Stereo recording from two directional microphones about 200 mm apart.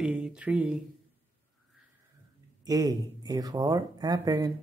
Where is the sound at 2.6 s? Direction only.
20° right (ahead or behind).